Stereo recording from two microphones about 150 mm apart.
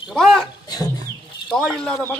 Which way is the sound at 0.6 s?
25° left (ahead or behind).